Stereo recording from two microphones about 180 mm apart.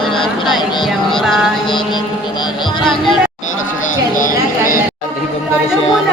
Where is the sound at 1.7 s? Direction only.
25° left (ahead or behind).